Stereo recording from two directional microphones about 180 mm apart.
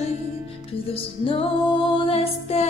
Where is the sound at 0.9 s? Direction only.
30° left (ahead or behind).